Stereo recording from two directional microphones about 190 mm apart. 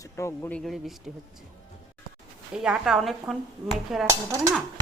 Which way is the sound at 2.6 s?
5° right (ahead or behind).